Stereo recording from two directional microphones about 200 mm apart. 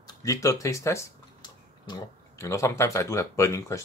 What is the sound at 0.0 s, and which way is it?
Speech, 15° left (ahead or behind).